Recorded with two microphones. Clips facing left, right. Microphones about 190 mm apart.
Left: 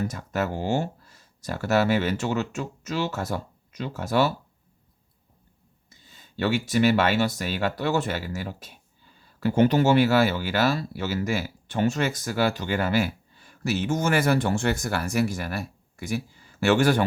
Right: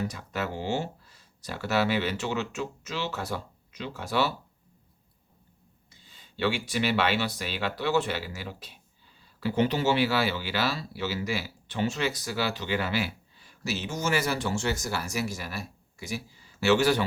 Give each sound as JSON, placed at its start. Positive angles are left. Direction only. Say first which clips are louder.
{"t": 0.1, "sound": "speech", "louder": "left 5 dB", "side_deg": 45}
{"t": 5.9, "sound": "speech", "louder": "left 5 dB", "side_deg": 45}